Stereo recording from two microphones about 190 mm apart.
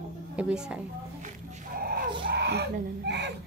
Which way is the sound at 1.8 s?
50° right (ahead or behind).